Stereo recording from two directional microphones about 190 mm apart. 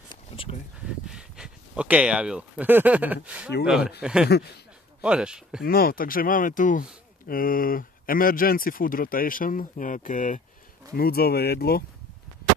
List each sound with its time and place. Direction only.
0.1 s a sound: 25° left (ahead or behind)
0.8 s speech: 5° right (ahead or behind)
5.6 s speech: 50° left (ahead or behind)